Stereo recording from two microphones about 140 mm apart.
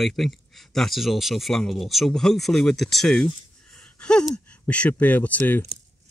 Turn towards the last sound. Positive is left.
turn(degrees=10)  # may be behind; listen again after turning